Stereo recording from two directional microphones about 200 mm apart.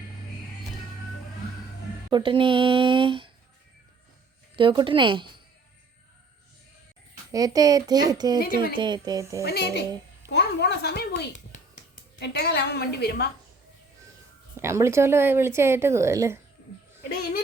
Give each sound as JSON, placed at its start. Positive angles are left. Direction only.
{"t": 2.0, "sound": "speech", "side_deg": -25}
{"t": 4.5, "sound": "speech", "side_deg": -25}
{"t": 7.3, "sound": "speech", "side_deg": -20}
{"t": 9.4, "sound": "a woman's voice", "side_deg": 50}
{"t": 14.5, "sound": "a woman's voice", "side_deg": -15}